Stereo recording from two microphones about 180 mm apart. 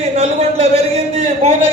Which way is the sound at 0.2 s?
35° right (ahead or behind).